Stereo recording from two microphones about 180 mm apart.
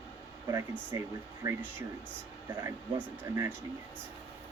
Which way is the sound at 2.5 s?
15° right (ahead or behind).